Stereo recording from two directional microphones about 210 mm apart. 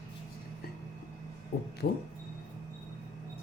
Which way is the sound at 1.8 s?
50° left (ahead or behind).